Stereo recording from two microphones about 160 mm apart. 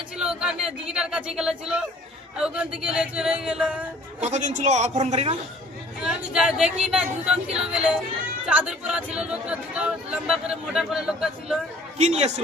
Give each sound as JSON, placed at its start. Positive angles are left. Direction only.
{"t": 0.2, "sound": "a sound", "side_deg": -5}
{"t": 2.4, "sound": "speech", "side_deg": -5}
{"t": 4.2, "sound": "a man's voice", "side_deg": -50}
{"t": 6.0, "sound": "speech", "side_deg": -5}
{"t": 11.9, "sound": "a man's voice", "side_deg": -40}